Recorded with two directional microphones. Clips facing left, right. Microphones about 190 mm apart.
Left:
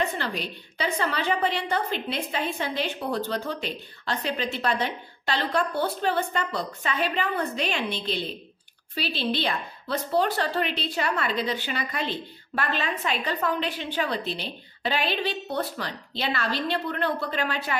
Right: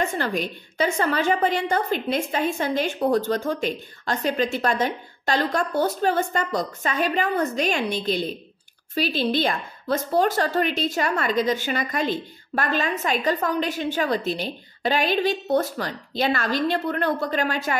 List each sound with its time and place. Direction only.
0.0 s a woman's voice: 45° right (ahead or behind)